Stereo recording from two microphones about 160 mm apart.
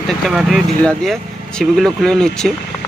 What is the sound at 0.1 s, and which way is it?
Speech, centre (ahead or behind).